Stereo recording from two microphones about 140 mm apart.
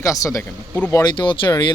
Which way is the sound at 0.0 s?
25° left (ahead or behind).